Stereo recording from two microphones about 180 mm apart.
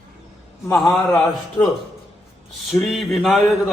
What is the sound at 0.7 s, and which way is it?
Speech, centre (ahead or behind).